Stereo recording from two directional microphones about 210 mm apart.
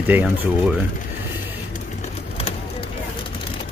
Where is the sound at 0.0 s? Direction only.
5° right (ahead or behind).